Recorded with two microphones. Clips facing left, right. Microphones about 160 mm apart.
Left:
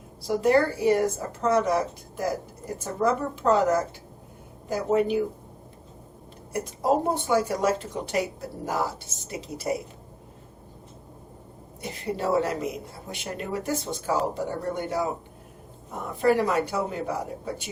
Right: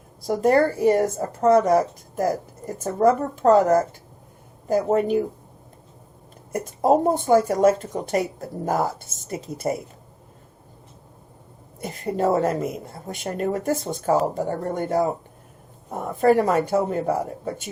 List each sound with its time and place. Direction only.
0.3 s a woman's voice: 45° right (ahead or behind)
7.1 s a woman's voice: 45° right (ahead or behind)
11.8 s a woman's voice: 50° right (ahead or behind)
16.2 s a woman's voice: 45° right (ahead or behind)